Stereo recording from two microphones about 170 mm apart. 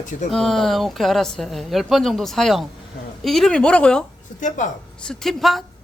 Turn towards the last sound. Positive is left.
turn(degrees=0)  # may be behind; listen again after turning